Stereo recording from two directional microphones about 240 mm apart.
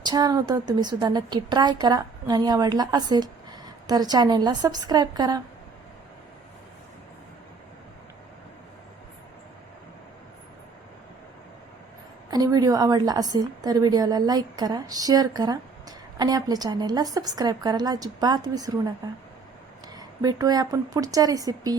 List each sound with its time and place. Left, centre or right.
0.0 s a woman's voice: centre
12.3 s a woman's voice: centre
20.0 s a woman's voice: centre